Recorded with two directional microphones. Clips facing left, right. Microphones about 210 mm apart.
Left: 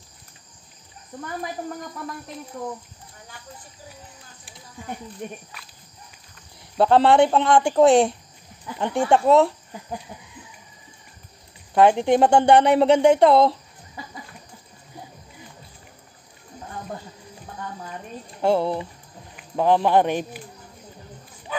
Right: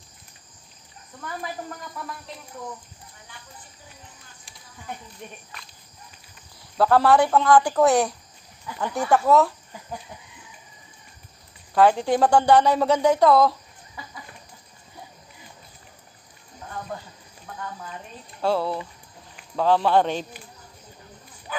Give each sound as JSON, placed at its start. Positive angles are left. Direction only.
{"t": 6.8, "sound": "a woman's voice", "side_deg": 25}
{"t": 11.7, "sound": "a woman's voice", "side_deg": 20}
{"t": 18.4, "sound": "a woman's voice", "side_deg": 20}